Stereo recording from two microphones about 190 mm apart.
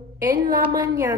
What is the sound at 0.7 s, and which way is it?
Speech, 20° right (ahead or behind).